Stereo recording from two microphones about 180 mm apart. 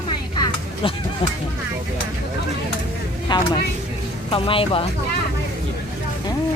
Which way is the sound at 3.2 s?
25° left (ahead or behind).